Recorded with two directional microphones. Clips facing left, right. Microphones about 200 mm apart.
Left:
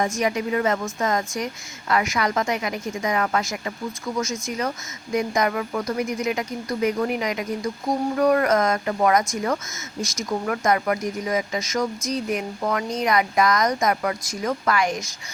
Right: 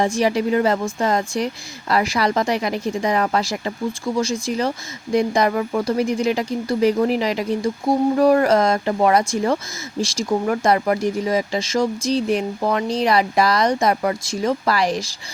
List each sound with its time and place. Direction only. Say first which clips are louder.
0.0 s speech: right 5 dB; 30° right (ahead or behind)